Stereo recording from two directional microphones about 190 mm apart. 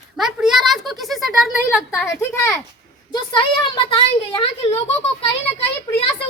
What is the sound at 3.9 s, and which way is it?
Speech, 30° left (ahead or behind).